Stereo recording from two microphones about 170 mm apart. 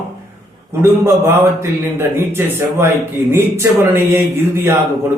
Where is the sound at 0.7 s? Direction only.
15° right (ahead or behind).